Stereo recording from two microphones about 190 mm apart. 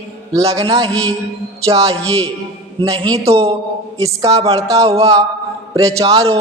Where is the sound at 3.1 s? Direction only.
35° right (ahead or behind).